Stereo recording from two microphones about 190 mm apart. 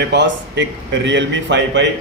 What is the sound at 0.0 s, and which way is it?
A man's voice, 65° right (ahead or behind).